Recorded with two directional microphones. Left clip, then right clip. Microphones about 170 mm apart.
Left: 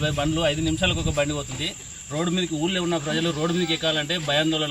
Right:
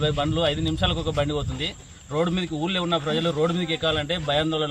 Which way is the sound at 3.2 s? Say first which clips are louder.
Right 1 dB; 25° right (ahead or behind).